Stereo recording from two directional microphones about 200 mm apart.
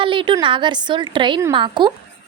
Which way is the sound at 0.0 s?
25° right (ahead or behind).